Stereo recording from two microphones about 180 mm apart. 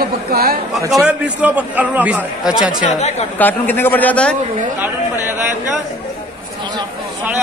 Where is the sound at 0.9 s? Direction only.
5° right (ahead or behind).